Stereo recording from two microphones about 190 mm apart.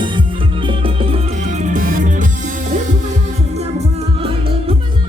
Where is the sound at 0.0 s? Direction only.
25° right (ahead or behind).